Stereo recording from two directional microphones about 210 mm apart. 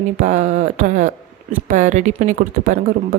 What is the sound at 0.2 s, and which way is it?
Speech, 35° right (ahead or behind).